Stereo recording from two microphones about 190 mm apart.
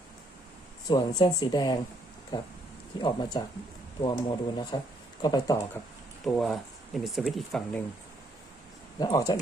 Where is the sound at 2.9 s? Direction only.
25° left (ahead or behind).